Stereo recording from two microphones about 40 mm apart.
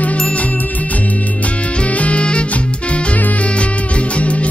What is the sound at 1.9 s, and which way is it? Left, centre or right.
Music, left.